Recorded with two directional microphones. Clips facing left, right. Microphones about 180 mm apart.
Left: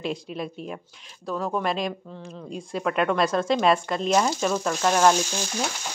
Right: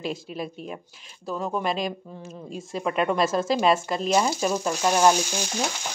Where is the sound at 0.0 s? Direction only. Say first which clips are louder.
Left 1 dB; centre (ahead or behind).